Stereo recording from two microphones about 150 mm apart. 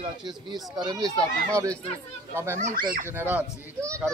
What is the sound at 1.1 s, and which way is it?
Speech, 5° left (ahead or behind).